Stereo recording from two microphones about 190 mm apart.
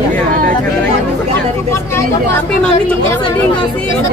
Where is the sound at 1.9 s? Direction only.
10° left (ahead or behind).